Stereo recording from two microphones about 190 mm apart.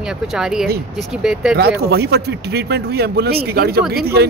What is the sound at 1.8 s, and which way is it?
Speech, 60° right (ahead or behind).